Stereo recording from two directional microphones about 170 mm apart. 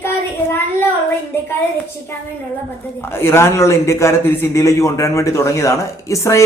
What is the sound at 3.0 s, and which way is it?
A man's voice, 15° left (ahead or behind).